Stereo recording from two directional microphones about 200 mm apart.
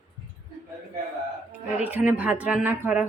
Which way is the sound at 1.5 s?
10° right (ahead or behind).